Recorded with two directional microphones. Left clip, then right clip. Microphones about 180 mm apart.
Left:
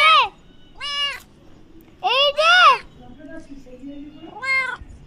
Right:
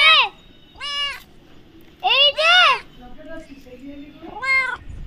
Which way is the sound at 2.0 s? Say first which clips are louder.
Right 1 dB; 65° left (ahead or behind).